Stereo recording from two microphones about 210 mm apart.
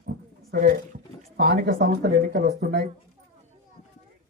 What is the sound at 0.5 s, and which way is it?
Speech, 50° right (ahead or behind).